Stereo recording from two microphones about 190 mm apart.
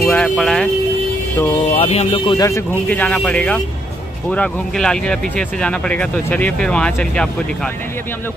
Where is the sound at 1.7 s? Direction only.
30° left (ahead or behind).